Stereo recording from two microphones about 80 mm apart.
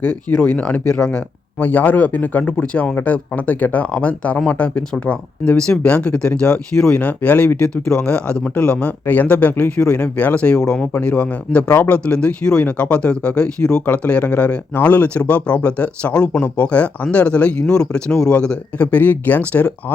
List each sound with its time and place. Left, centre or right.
0.0 s speech: left